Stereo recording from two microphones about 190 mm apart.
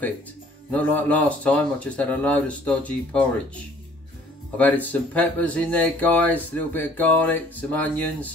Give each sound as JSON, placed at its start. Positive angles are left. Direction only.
{"t": 0.7, "sound": "speech", "side_deg": 10}
{"t": 4.6, "sound": "speech", "side_deg": 10}